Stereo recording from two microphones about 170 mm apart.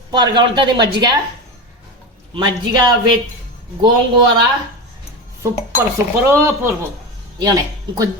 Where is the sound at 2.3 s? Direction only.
25° right (ahead or behind).